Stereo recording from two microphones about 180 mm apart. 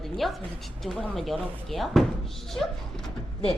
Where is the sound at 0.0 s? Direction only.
Centre (ahead or behind).